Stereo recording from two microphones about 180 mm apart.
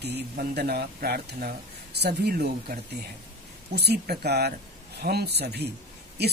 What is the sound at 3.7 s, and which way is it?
Speech, 65° right (ahead or behind).